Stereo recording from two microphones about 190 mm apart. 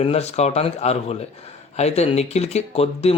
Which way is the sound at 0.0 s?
35° left (ahead or behind).